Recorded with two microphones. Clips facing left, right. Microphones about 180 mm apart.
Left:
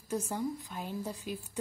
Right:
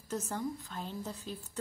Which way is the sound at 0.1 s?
10° left (ahead or behind).